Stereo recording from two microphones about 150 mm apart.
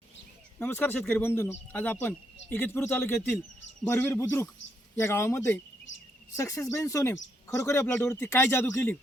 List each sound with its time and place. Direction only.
0.6 s speech: 15° left (ahead or behind)